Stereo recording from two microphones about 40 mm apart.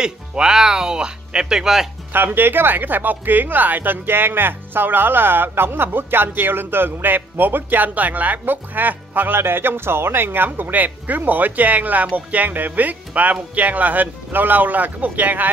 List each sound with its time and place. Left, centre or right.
0.0 s speech: centre
2.1 s speech: right
4.0 s speech: right
9.3 s speech: right
12.1 s music: right
12.4 s speech: right